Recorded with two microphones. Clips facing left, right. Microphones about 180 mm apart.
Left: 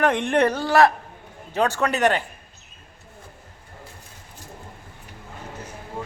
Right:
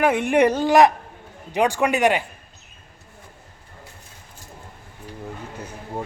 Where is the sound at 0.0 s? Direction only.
10° right (ahead or behind).